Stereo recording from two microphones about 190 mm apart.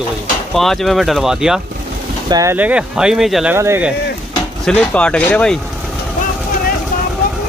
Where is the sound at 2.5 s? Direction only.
5° right (ahead or behind).